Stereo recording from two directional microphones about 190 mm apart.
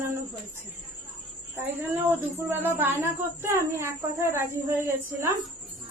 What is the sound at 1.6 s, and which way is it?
Speech, 10° right (ahead or behind).